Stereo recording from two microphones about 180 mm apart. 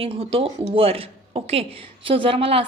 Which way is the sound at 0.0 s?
30° right (ahead or behind).